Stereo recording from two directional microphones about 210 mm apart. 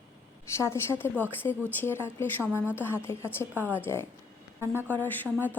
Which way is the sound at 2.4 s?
10° right (ahead or behind).